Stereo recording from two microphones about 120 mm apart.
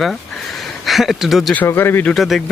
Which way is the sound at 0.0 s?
Centre (ahead or behind).